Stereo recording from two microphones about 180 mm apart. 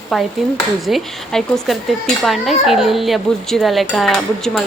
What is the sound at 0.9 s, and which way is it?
Speech, centre (ahead or behind).